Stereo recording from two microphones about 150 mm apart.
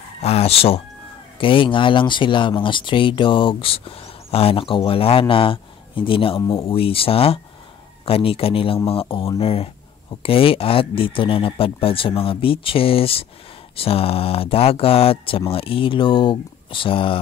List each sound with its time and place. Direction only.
0.2 s a man's voice: 45° left (ahead or behind)